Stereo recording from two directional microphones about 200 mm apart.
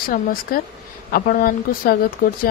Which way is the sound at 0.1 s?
45° left (ahead or behind).